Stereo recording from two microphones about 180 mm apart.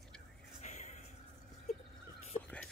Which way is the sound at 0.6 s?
40° left (ahead or behind).